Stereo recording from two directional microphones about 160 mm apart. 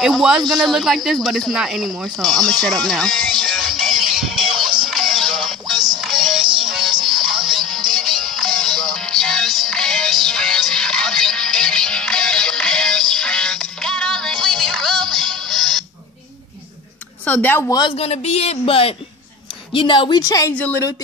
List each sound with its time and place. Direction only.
0.0 s speech: centre (ahead or behind)
4.8 s music: centre (ahead or behind)
6.4 s music: 30° right (ahead or behind)
7.1 s music: centre (ahead or behind)
17.2 s speech: 10° left (ahead or behind)
17.7 s a man's voice: 35° left (ahead or behind)
20.5 s a woman's voice: 10° left (ahead or behind)